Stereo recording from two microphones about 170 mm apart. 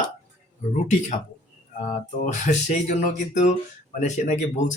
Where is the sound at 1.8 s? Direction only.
45° left (ahead or behind).